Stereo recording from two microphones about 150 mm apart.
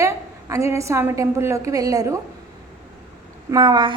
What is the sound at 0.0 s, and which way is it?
A woman's voice, 20° right (ahead or behind).